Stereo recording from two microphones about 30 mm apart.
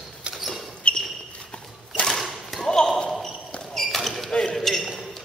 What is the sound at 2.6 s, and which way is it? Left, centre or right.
Basketball bounce, centre.